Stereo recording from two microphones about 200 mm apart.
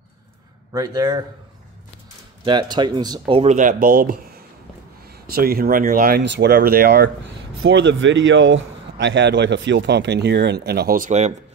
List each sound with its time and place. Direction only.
0.7 s speech: 20° right (ahead or behind)
2.4 s speech: 20° right (ahead or behind)
3.5 s speech: 45° right (ahead or behind)
5.3 s speech: 50° right (ahead or behind)
7.6 s a man's voice: 65° right (ahead or behind); by 11.3 s 35° right (ahead or behind)